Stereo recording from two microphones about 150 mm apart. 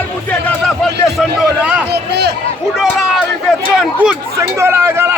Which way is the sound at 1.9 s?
90° right.